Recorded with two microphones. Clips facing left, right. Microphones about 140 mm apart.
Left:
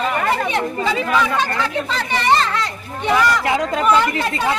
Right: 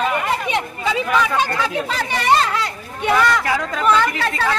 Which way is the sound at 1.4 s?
10° right (ahead or behind).